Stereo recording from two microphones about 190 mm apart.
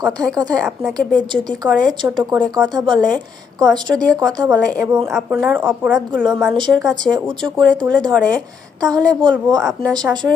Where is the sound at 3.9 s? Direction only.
5° right (ahead or behind).